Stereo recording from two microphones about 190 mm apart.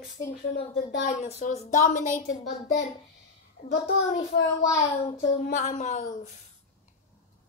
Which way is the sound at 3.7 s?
55° left (ahead or behind).